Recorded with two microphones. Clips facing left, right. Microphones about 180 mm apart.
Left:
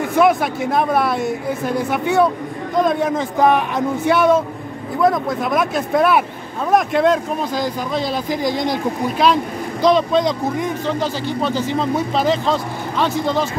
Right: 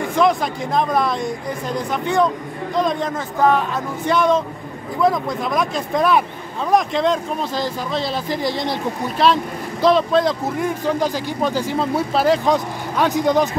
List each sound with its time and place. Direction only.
0.2 s a woman's voice: 5° left (ahead or behind)
8.5 s speech: 45° left (ahead or behind)
9.2 s speech: centre (ahead or behind)